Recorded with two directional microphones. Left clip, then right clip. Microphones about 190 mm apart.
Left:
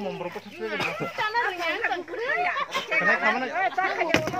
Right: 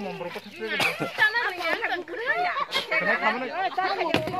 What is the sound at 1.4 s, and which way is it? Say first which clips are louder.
Speech: even; 20° right (ahead or behind).